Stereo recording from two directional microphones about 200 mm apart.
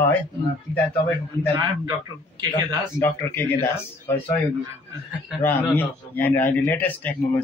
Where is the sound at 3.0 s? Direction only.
10° left (ahead or behind).